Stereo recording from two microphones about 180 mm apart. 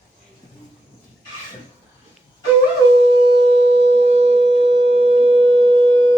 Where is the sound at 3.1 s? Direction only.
30° right (ahead or behind).